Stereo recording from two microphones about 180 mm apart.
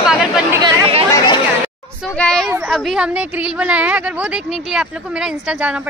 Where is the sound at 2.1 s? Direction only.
5° left (ahead or behind).